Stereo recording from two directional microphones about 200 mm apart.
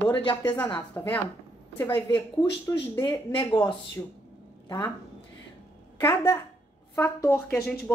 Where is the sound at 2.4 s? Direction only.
15° left (ahead or behind).